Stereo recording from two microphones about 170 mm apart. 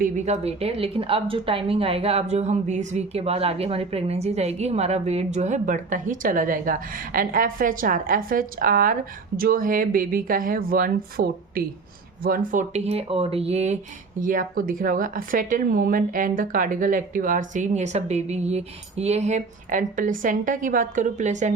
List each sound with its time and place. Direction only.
0.0 s a woman's voice: 45° right (ahead or behind)
14.2 s a woman's voice: 55° right (ahead or behind)